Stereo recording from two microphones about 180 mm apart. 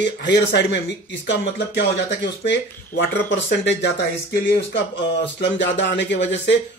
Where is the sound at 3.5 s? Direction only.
75° left (ahead or behind).